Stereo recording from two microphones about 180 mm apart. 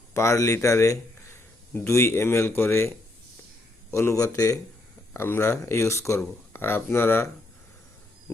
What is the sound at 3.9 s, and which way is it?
A man's voice, 15° left (ahead or behind).